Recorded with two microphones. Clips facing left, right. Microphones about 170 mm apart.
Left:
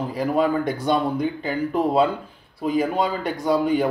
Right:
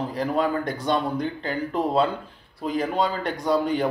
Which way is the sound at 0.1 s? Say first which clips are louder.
Left 5 dB; 5° left (ahead or behind).